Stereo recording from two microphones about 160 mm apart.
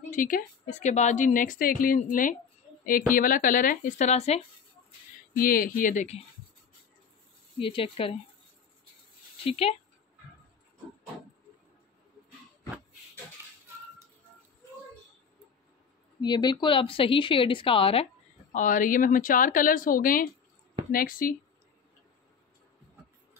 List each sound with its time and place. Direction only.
0.1 s a woman's voice: 55° left (ahead or behind)
5.3 s a woman's voice: 65° left (ahead or behind)
7.5 s a woman's voice: 35° left (ahead or behind)
9.4 s a woman's voice: 35° left (ahead or behind)
16.2 s a woman's voice: 25° left (ahead or behind)
18.5 s a woman's voice: 55° left (ahead or behind)